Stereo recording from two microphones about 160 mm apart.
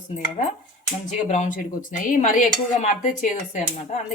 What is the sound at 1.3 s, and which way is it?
Speech, 50° left (ahead or behind).